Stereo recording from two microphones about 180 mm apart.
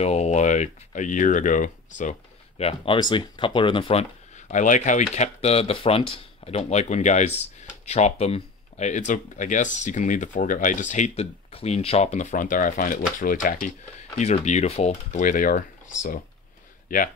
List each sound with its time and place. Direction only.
0.0 s speech: 35° left (ahead or behind)
4.5 s speech: 45° left (ahead or behind)
14.1 s speech: 40° left (ahead or behind)